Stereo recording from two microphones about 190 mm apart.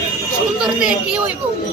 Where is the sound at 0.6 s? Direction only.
5° right (ahead or behind).